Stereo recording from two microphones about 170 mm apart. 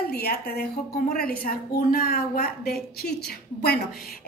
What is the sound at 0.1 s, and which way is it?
Speech, 65° left (ahead or behind).